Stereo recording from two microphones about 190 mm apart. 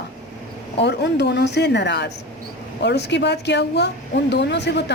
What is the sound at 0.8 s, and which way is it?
A woman's voice, 65° left (ahead or behind).